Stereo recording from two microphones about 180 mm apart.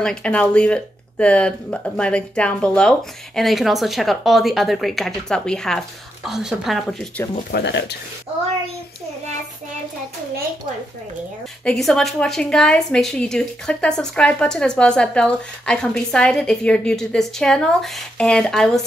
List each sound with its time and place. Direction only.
0.0 s speech: 5° left (ahead or behind)
7.5 s speech: 70° left (ahead or behind)
11.6 s speech: centre (ahead or behind)